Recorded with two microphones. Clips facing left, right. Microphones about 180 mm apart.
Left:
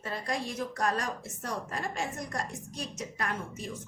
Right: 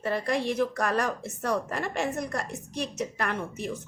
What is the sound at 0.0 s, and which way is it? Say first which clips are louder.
A woman's voice: right 7 dB; 65° right (ahead or behind).